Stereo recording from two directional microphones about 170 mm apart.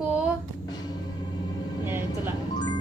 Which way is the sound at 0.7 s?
25° left (ahead or behind).